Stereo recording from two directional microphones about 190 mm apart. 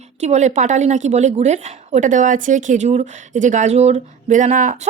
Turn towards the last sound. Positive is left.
turn(degrees=-40)  # may be behind; listen again after turning